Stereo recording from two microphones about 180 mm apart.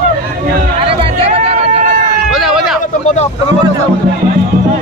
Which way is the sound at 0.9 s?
35° right (ahead or behind).